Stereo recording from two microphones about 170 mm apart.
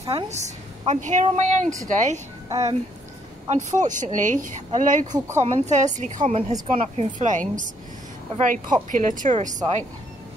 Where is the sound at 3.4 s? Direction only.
45° right (ahead or behind).